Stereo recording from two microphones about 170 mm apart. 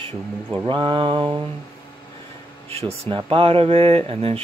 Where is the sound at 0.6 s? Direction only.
30° right (ahead or behind).